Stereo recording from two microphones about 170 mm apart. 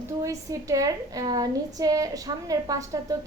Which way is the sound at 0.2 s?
20° right (ahead or behind).